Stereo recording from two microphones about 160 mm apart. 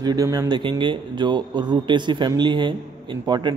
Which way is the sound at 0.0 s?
25° right (ahead or behind).